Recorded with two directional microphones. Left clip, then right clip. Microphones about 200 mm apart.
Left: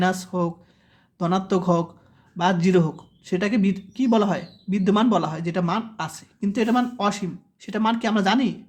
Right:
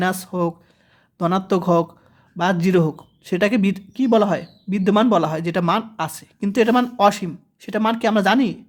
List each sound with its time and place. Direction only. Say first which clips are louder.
0.0 s speech: right 2 dB; 30° right (ahead or behind)